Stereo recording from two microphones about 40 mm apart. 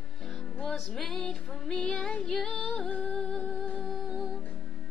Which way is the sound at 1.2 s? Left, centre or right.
Centre.